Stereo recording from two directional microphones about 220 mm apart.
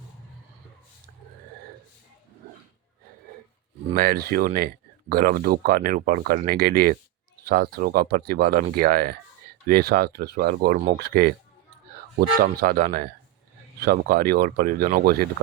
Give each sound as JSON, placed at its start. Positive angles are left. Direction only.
{"t": 3.9, "sound": "speech", "side_deg": -40}
{"t": 12.4, "sound": "speech", "side_deg": -40}